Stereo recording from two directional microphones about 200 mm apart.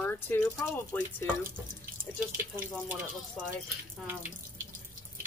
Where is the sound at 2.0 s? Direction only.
10° right (ahead or behind).